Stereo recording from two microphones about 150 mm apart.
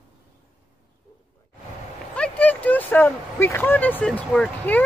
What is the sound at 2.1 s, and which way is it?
Speech, 10° left (ahead or behind).